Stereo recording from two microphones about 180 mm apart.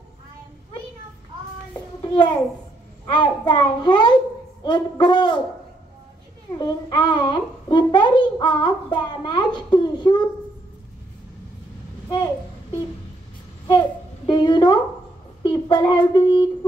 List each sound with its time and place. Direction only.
1.7 s child singing: 25° left (ahead or behind)
3.1 s a child's voice: 25° left (ahead or behind)
6.6 s a child's voice: 25° left (ahead or behind)
13.7 s a sound: 25° left (ahead or behind)
15.4 s speech: 25° left (ahead or behind)